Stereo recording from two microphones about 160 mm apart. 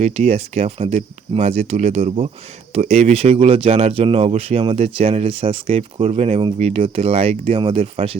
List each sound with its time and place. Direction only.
0.0 s speech: 40° right (ahead or behind)